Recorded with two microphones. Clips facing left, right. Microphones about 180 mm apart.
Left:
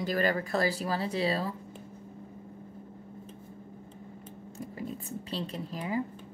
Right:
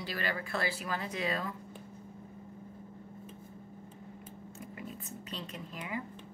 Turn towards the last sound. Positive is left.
turn(degrees=35)  # may be behind; listen again after turning